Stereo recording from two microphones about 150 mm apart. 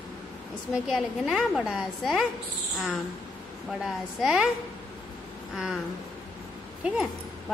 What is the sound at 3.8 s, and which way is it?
Speech, 5° right (ahead or behind).